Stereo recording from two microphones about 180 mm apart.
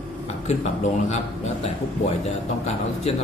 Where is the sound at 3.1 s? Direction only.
35° left (ahead or behind).